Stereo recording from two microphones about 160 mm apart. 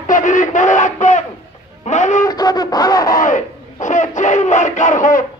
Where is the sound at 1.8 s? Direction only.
50° left (ahead or behind).